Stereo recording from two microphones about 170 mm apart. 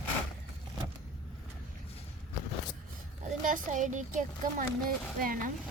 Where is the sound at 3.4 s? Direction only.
50° right (ahead or behind).